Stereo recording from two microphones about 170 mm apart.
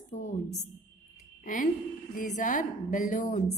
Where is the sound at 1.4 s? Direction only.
50° left (ahead or behind).